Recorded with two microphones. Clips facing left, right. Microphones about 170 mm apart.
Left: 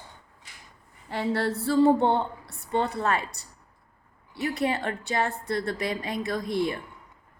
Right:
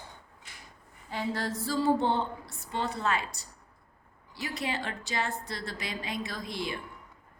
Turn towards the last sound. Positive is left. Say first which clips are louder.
# left 9 dB
turn(degrees=55)  # may be behind; listen again after turning